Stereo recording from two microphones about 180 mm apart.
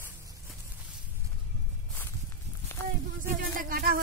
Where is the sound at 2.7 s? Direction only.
15° left (ahead or behind).